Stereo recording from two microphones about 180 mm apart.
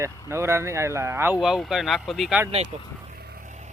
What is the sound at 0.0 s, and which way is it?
Speech, 15° right (ahead or behind).